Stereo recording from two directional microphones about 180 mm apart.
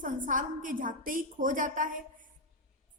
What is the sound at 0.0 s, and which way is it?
A woman's voice, 45° right (ahead or behind).